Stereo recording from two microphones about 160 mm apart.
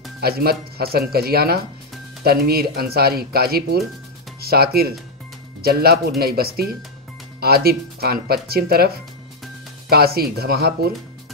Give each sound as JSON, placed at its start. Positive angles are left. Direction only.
{"t": 0.2, "sound": "speech", "side_deg": -75}